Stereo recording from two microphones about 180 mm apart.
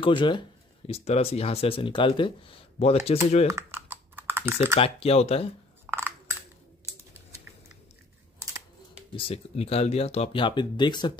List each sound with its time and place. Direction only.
0.0 s speech: 25° left (ahead or behind)
3.4 s typing: 15° right (ahead or behind)
4.7 s speech: 30° left (ahead or behind)
5.9 s crushing: 10° right (ahead or behind)
9.1 s speech: 35° left (ahead or behind)